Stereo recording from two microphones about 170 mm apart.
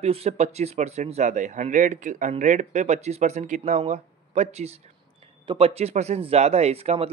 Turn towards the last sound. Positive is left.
turn(degrees=-35)  # may be behind; listen again after turning